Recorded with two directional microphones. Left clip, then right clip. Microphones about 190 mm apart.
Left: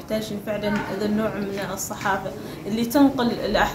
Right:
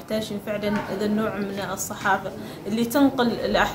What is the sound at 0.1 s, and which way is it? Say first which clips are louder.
A woman's voice: left 1 dB; 15° right (ahead or behind).